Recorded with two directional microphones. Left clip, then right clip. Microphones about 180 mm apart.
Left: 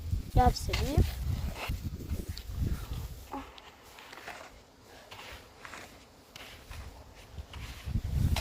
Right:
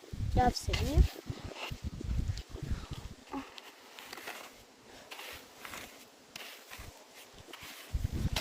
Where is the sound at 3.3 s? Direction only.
20° right (ahead or behind).